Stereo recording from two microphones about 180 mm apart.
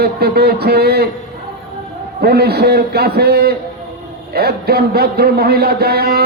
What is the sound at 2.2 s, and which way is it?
A man's voice, 60° right (ahead or behind).